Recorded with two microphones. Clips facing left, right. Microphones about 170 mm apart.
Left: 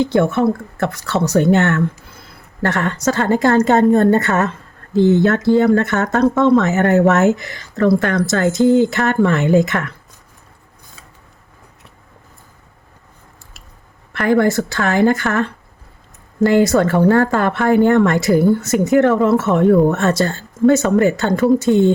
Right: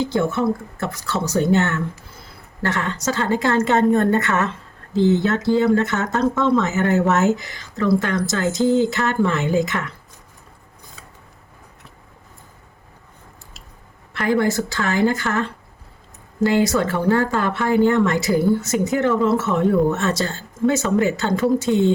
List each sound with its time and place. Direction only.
0.0 s speech: 70° left (ahead or behind)
2.6 s a woman's voice: 55° left (ahead or behind)
4.9 s speech: 55° left (ahead or behind)
14.1 s speech: 55° left (ahead or behind)